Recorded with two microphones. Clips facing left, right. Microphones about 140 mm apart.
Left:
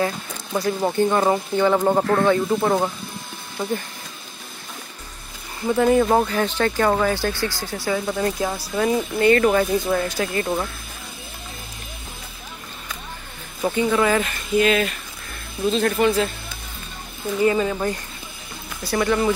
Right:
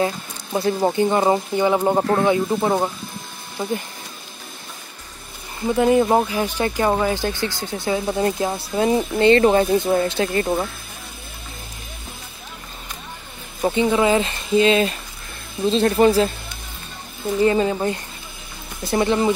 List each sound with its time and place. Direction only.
0.0 s speech: 25° right (ahead or behind)
5.7 s speech: 20° right (ahead or behind)
13.6 s speech: 20° right (ahead or behind)
17.4 s speech: 35° right (ahead or behind)